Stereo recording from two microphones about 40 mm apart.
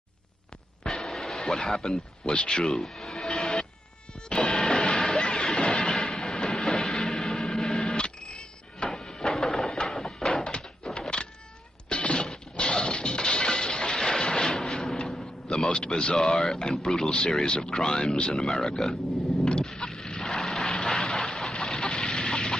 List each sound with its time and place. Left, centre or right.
0.8 s music: centre
1.4 s speech: centre
2.8 s music: centre
7.8 s printer: left
8.8 s a sound: centre
10.4 s thunk: left
10.9 s power windows: left
11.9 s a sound: left
12.7 s music: left
15.4 s a sound: centre
16.2 s speech: centre
19.8 s a sound: centre